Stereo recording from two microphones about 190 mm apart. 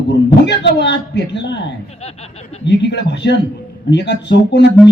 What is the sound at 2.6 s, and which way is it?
A man's voice, 65° left (ahead or behind).